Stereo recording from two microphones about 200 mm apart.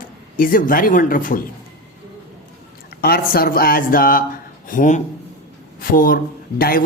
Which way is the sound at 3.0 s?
50° left (ahead or behind).